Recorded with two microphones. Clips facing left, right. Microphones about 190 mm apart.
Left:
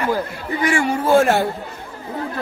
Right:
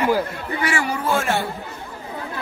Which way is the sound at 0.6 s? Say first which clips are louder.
Left 5 dB; 25° left (ahead or behind).